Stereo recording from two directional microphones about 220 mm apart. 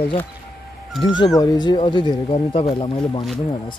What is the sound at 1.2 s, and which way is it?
Speech, 15° left (ahead or behind).